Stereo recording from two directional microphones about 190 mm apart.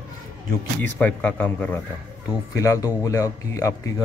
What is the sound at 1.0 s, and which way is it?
Speech, 5° left (ahead or behind).